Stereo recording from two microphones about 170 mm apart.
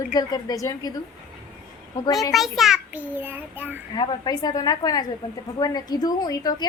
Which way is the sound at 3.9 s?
25° left (ahead or behind).